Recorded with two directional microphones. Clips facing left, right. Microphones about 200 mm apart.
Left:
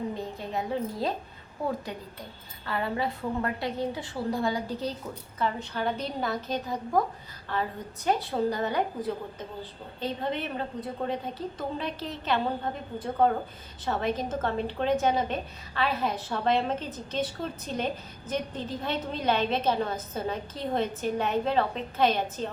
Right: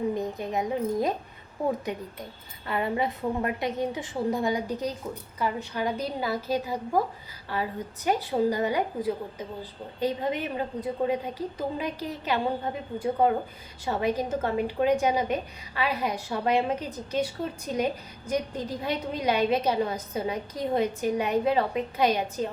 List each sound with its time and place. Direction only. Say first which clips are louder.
0.2 s a woman's voice: right 4 dB; 15° right (ahead or behind)